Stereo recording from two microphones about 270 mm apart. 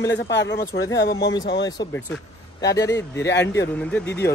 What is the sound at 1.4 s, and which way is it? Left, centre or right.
Speech, left.